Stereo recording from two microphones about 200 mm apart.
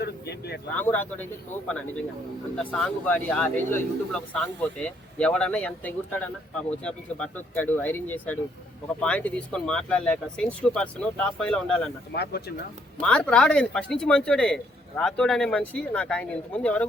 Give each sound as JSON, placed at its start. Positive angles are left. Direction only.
{"t": 0.0, "sound": "a sound", "side_deg": 55}
{"t": 0.8, "sound": "a man's voice", "side_deg": 10}
{"t": 12.1, "sound": "speech", "side_deg": 55}
{"t": 13.0, "sound": "a man's voice", "side_deg": 5}